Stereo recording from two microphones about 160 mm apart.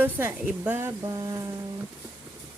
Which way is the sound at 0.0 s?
15° right (ahead or behind).